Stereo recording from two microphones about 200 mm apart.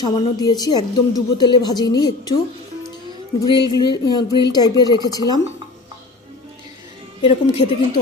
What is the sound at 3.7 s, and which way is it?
A woman's voice, 20° left (ahead or behind).